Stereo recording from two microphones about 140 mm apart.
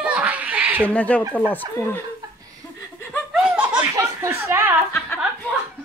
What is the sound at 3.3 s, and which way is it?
Laughter, 10° right (ahead or behind).